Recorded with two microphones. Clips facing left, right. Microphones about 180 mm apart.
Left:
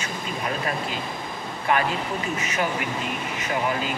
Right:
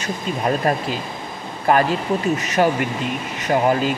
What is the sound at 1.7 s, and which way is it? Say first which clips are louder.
Speech: right 7 dB; 40° right (ahead or behind).